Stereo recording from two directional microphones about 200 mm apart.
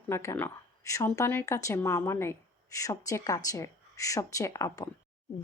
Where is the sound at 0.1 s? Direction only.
15° left (ahead or behind).